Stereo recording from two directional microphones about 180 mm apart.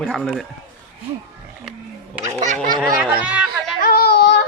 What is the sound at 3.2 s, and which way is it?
Chatter, 5° right (ahead or behind).